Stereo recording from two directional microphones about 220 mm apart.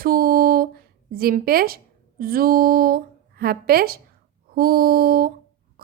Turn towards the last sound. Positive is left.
turn(degrees=-40)  # may be behind; listen again after turning